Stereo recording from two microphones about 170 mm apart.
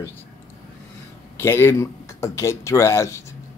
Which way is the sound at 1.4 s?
15° left (ahead or behind).